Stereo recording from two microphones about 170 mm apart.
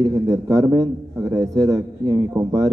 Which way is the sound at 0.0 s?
20° right (ahead or behind).